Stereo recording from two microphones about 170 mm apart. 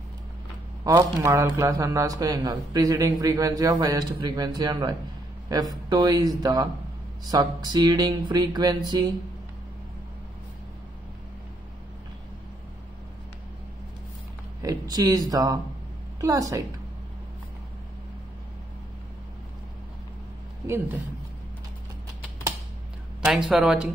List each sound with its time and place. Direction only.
0.8 s speech: 20° right (ahead or behind)
14.6 s speech: 20° right (ahead or behind)
20.6 s speech: 15° right (ahead or behind)
23.2 s speech: centre (ahead or behind)